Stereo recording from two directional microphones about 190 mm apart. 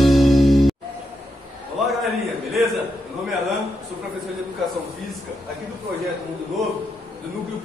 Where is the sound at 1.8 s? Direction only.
Centre (ahead or behind).